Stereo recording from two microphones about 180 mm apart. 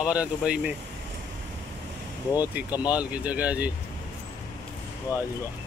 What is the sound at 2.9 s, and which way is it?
Speech, 10° right (ahead or behind).